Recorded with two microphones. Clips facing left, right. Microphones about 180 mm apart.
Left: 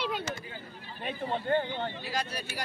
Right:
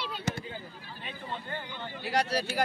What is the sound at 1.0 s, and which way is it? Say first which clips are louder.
Speech: left 7 dB; 50° left (ahead or behind).